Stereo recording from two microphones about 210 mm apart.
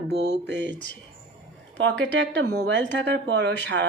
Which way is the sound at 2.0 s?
55° right (ahead or behind).